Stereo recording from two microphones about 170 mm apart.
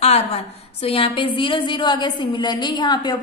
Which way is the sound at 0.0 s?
35° left (ahead or behind).